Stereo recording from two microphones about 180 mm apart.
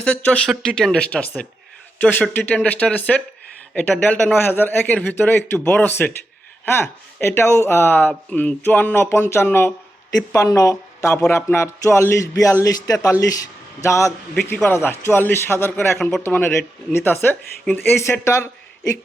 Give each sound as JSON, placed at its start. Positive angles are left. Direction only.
{"t": 0.0, "sound": "speech", "side_deg": 5}